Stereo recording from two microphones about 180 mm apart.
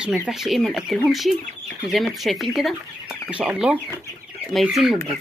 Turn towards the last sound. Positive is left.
turn(degrees=0)  # may be behind; listen again after turning